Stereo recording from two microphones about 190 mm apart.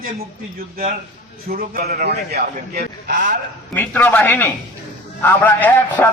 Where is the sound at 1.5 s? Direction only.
50° right (ahead or behind).